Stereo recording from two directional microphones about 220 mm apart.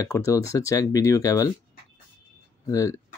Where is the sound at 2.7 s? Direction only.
15° left (ahead or behind).